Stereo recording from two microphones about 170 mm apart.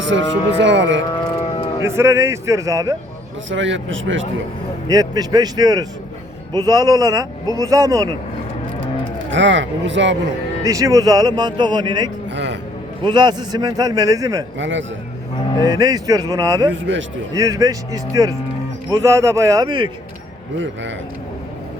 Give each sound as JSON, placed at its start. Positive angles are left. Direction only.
{"t": 0.0, "sound": "speech", "side_deg": -90}
{"t": 1.8, "sound": "a man's voice", "side_deg": -15}
{"t": 3.5, "sound": "speech", "side_deg": -90}
{"t": 4.9, "sound": "speech", "side_deg": -20}
{"t": 9.3, "sound": "speech", "side_deg": -90}
{"t": 10.6, "sound": "speech", "side_deg": -20}
{"t": 12.3, "sound": "a man's voice", "side_deg": -90}
{"t": 13.0, "sound": "speech", "side_deg": -25}
{"t": 14.6, "sound": "speech", "side_deg": -90}
{"t": 15.6, "sound": "speech", "side_deg": -20}
{"t": 16.7, "sound": "speech", "side_deg": -90}
{"t": 17.3, "sound": "speech", "side_deg": -20}